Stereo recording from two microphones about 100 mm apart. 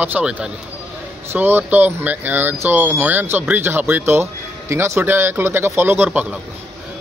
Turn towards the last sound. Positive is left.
turn(degrees=-20)  # may be behind; listen again after turning